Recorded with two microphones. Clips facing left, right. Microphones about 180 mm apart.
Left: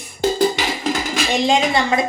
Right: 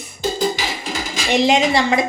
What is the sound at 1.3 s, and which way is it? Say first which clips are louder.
Speech: right 3 dB; 20° right (ahead or behind).